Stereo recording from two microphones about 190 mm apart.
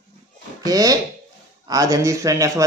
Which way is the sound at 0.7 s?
20° right (ahead or behind).